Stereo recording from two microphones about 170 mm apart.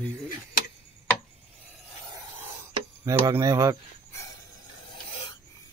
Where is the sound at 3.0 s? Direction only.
20° right (ahead or behind).